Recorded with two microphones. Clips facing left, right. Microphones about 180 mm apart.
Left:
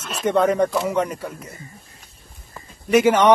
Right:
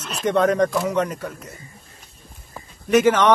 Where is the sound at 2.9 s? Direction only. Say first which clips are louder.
Left 1 dB; 10° left (ahead or behind).